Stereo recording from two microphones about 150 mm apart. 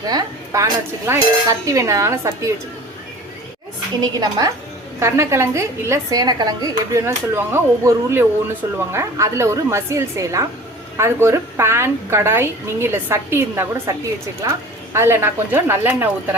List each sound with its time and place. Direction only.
0.0 s a woman's voice: 25° right (ahead or behind)
4.2 s a woman's voice: 25° right (ahead or behind)